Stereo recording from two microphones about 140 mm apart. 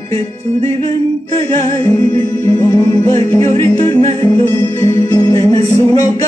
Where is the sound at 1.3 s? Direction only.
25° left (ahead or behind).